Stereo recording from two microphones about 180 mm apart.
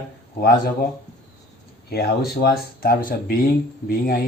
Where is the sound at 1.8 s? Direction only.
60° left (ahead or behind).